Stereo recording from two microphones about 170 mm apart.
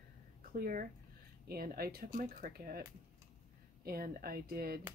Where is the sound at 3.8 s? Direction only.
60° right (ahead or behind).